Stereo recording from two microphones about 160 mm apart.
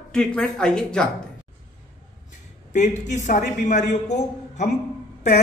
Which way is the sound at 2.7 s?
50° left (ahead or behind).